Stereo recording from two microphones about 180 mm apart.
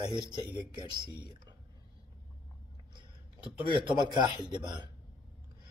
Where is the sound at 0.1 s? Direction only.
25° right (ahead or behind).